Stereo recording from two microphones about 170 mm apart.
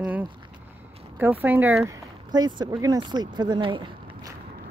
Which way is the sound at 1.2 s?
10° right (ahead or behind).